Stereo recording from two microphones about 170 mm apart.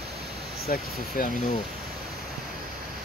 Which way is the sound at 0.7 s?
60° left (ahead or behind).